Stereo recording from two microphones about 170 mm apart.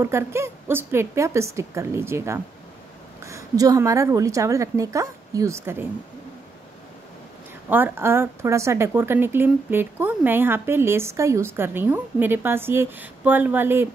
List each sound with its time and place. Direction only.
0.0 s a woman's voice: 15° right (ahead or behind)
7.7 s a woman's voice: 10° right (ahead or behind)